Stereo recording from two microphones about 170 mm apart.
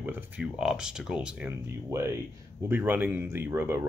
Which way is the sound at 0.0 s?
5° right (ahead or behind).